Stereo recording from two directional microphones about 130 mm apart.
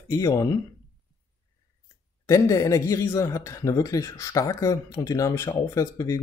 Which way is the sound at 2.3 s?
25° left (ahead or behind).